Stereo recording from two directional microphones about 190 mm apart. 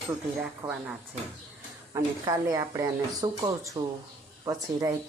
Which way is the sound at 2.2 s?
20° right (ahead or behind).